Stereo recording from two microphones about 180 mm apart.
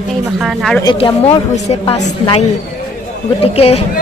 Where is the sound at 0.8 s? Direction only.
30° left (ahead or behind).